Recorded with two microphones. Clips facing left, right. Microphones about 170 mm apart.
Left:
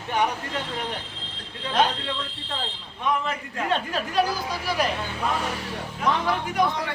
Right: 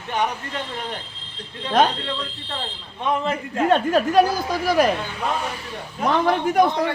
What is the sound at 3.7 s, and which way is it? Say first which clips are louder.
Speech: right 9 dB; 50° right (ahead or behind).